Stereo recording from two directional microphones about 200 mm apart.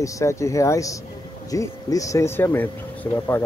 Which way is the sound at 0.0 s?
15° left (ahead or behind).